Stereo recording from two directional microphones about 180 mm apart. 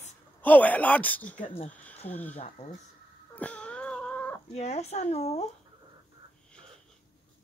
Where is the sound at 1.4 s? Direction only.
30° left (ahead or behind).